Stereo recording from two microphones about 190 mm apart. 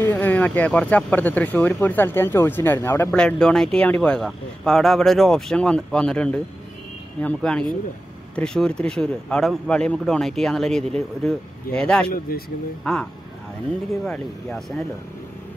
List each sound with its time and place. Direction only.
0.0 s speech: 10° left (ahead or behind)
12.1 s speech: 50° left (ahead or behind)
12.8 s speech: 5° left (ahead or behind)